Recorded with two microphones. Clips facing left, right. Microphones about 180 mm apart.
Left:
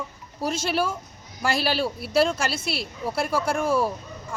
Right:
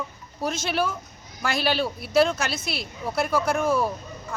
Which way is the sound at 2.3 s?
30° left (ahead or behind).